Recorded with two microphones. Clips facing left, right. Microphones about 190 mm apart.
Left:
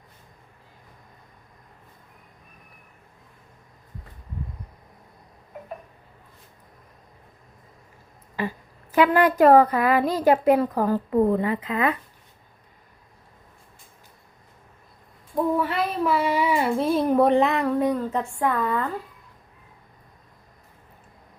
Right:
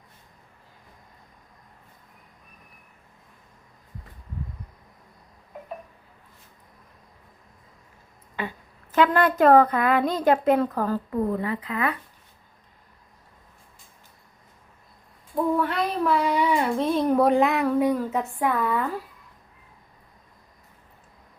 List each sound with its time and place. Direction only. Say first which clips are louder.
8.4 s a woman's voice: left 4 dB; 5° left (ahead or behind)
11.1 s a woman's voice: left 5 dB; 25° left (ahead or behind)
15.5 s child singing: even; centre (ahead or behind)
18.3 s speech: even; 10° right (ahead or behind)